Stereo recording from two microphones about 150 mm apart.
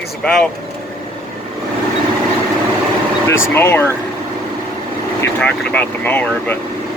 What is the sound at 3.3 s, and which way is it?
Speech, 15° left (ahead or behind).